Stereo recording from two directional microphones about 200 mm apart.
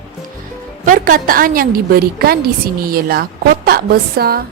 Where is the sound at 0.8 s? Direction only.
40° right (ahead or behind).